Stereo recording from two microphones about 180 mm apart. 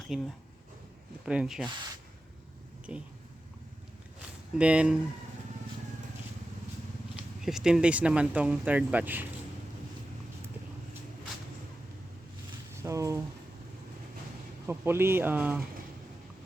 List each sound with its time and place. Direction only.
0.1 s speech: centre (ahead or behind)
4.5 s speech: 5° right (ahead or behind)
7.2 s speech: 5° right (ahead or behind)
12.7 s speech: 15° right (ahead or behind)
14.7 s speech: 15° right (ahead or behind)